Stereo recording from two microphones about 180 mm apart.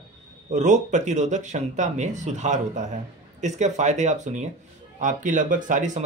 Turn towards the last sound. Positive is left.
turn(degrees=-45)  # may be behind; listen again after turning